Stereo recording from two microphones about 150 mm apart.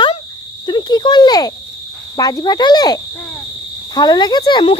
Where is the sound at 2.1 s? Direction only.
25° left (ahead or behind).